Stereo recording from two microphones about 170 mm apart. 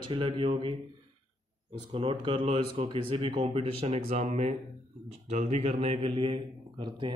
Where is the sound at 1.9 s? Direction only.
30° right (ahead or behind).